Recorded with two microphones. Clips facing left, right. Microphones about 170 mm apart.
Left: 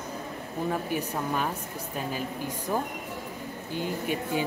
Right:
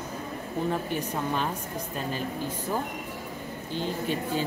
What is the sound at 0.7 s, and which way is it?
Speech, 5° left (ahead or behind).